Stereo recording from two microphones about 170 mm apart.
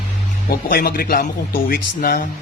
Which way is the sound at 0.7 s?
60° left (ahead or behind).